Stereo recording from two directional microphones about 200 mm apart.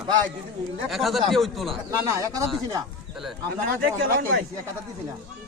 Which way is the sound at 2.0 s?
15° right (ahead or behind).